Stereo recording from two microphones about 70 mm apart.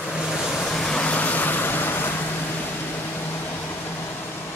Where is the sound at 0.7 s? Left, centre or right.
Centre; by 2.1 s left.